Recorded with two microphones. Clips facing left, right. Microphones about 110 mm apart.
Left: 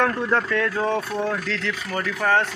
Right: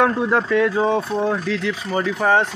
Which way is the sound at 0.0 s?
15° right (ahead or behind).